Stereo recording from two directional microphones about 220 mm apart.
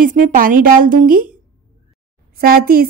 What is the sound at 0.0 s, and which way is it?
A woman's voice, 40° right (ahead or behind).